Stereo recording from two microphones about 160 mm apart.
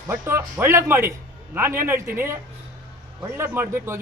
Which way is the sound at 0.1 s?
15° right (ahead or behind).